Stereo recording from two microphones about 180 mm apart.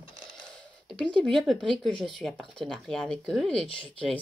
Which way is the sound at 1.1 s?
Centre (ahead or behind).